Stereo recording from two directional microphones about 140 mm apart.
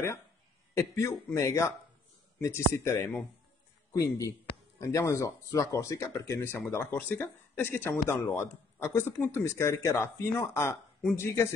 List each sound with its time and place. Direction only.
0.7 s speech: 20° left (ahead or behind)